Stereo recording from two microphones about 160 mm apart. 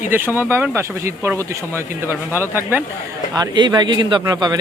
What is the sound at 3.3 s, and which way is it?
Speech, 25° right (ahead or behind).